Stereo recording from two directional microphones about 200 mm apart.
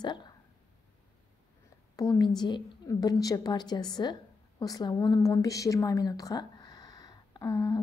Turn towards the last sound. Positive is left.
turn(degrees=15)  # may be behind; listen again after turning